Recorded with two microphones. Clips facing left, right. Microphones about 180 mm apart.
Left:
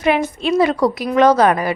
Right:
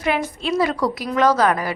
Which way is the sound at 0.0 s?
20° left (ahead or behind).